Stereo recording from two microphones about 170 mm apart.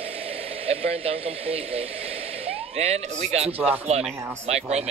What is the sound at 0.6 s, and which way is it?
Speech, 35° right (ahead or behind).